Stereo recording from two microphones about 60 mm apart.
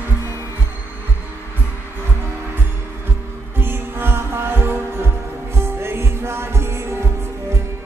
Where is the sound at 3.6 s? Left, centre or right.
Right.